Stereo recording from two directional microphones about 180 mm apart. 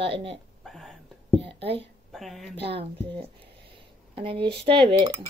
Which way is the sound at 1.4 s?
30° right (ahead or behind).